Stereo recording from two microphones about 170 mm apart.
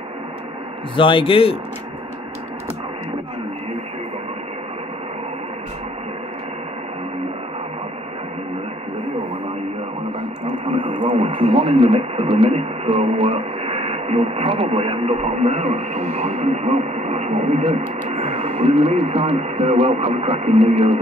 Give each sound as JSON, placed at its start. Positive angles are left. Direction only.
{"t": 0.9, "sound": "a man's voice", "side_deg": 30}
{"t": 10.6, "sound": "radio", "side_deg": -30}
{"t": 11.5, "sound": "speech", "side_deg": -35}